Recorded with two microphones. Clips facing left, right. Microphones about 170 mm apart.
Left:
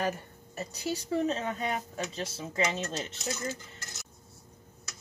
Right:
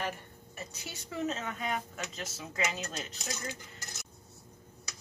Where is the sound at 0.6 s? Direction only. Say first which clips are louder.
Left 11 dB; 35° left (ahead or behind).